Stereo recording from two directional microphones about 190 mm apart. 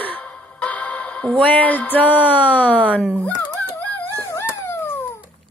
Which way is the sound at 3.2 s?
10° left (ahead or behind).